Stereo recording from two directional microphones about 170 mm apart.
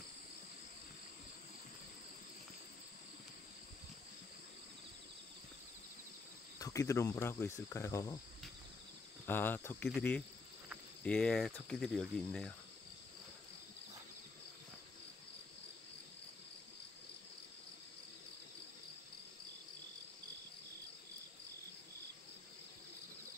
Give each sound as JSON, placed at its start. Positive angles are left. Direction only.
{"t": 6.6, "sound": "cricket", "side_deg": 20}
{"t": 9.2, "sound": "cricket", "side_deg": 10}
{"t": 11.1, "sound": "speech", "side_deg": 5}